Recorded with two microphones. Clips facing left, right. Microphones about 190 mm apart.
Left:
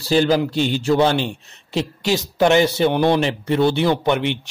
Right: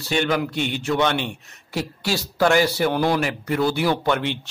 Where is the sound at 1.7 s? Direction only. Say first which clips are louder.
Left 5 dB; 20° left (ahead or behind).